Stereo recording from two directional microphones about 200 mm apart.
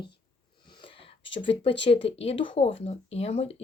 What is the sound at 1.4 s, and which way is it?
Speech, 25° left (ahead or behind).